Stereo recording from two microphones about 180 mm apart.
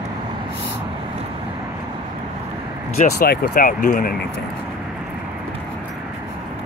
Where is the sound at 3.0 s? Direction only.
55° left (ahead or behind).